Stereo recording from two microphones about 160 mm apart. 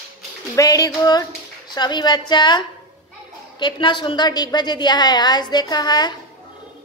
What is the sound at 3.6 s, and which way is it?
A woman's voice, 30° left (ahead or behind).